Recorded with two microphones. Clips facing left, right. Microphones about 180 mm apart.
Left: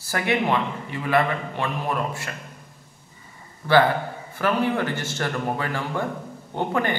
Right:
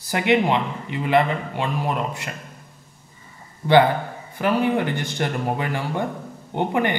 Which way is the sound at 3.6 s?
20° right (ahead or behind).